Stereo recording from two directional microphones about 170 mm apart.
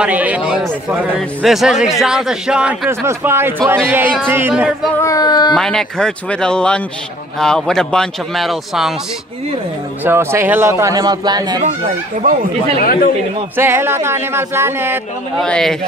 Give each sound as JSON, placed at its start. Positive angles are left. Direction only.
{"t": 0.0, "sound": "a man's voice", "side_deg": -10}
{"t": 5.0, "sound": "speech", "side_deg": 20}
{"t": 5.5, "sound": "a man's voice", "side_deg": 5}
{"t": 10.0, "sound": "a man's voice", "side_deg": -15}
{"t": 13.6, "sound": "a man's voice", "side_deg": -15}
{"t": 15.3, "sound": "a man's voice", "side_deg": 5}